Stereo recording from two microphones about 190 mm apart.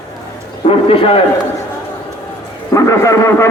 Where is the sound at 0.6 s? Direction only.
30° left (ahead or behind).